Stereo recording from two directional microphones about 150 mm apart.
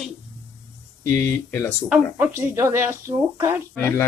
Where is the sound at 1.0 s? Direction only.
20° left (ahead or behind).